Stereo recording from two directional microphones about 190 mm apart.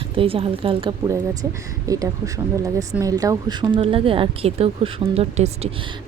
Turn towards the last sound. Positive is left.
turn(degrees=-35)  # may be behind; listen again after turning